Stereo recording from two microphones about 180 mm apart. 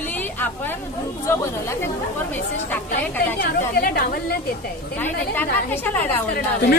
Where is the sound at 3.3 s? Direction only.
55° left (ahead or behind).